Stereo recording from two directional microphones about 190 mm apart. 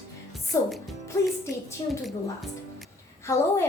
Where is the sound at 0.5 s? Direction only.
15° left (ahead or behind).